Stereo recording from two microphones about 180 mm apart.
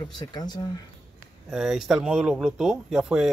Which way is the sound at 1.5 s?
Centre (ahead or behind).